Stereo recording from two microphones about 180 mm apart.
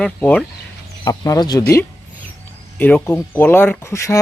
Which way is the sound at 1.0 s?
20° left (ahead or behind).